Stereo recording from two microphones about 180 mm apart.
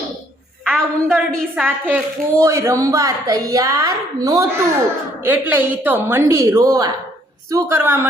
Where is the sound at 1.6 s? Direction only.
10° right (ahead or behind).